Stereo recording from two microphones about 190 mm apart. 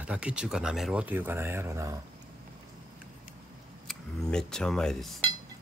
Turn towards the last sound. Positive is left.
turn(degrees=0)  # may be behind; listen again after turning